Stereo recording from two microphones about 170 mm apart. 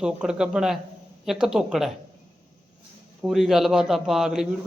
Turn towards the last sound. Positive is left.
turn(degrees=-5)  # may be behind; listen again after turning